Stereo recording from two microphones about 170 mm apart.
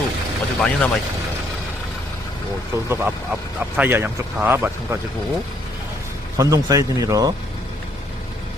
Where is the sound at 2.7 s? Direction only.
10° right (ahead or behind).